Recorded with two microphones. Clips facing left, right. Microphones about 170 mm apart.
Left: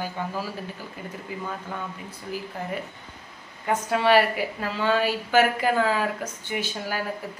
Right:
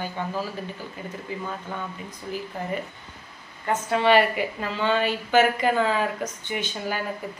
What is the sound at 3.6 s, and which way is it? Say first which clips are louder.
A woman's voice: right 1 dB; 5° left (ahead or behind).